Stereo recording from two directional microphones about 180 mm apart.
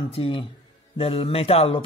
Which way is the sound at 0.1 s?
30° left (ahead or behind).